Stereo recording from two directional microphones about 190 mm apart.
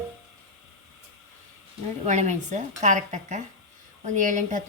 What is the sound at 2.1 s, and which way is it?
A woman's voice, 40° right (ahead or behind).